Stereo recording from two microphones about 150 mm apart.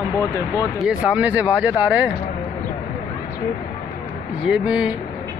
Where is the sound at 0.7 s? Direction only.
5° right (ahead or behind).